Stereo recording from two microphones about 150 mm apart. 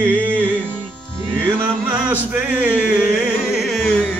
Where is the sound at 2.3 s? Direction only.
10° right (ahead or behind).